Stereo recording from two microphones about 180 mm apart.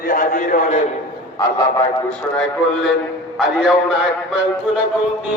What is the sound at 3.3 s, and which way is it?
Speech, 5° right (ahead or behind).